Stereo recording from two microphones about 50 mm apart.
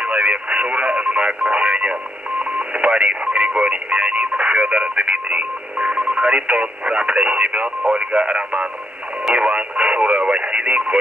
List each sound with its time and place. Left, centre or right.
0.0 s speech: right